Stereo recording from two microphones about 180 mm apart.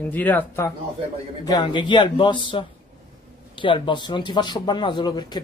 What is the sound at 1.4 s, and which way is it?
Speech, 25° left (ahead or behind).